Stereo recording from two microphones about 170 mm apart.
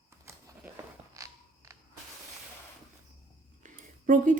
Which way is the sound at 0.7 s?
20° right (ahead or behind).